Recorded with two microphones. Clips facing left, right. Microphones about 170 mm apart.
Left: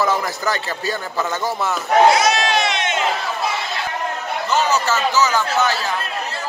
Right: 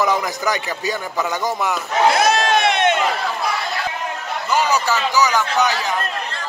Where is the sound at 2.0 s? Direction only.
55° right (ahead or behind).